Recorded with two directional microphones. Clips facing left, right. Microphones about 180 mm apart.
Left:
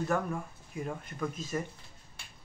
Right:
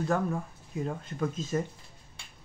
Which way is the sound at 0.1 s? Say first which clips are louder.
Right 3 dB; 20° right (ahead or behind).